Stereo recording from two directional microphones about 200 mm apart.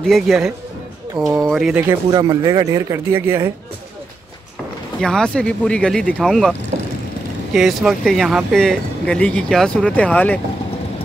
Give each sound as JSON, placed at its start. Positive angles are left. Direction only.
{"t": 0.0, "sound": "speech", "side_deg": 0}
{"t": 2.0, "sound": "speech", "side_deg": -20}
{"t": 5.0, "sound": "speech", "side_deg": 5}
{"t": 7.5, "sound": "speech", "side_deg": 0}